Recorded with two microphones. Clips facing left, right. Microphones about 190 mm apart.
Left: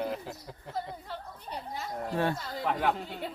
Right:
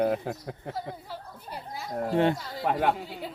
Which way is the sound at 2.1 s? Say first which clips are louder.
Right 6 dB; 20° right (ahead or behind).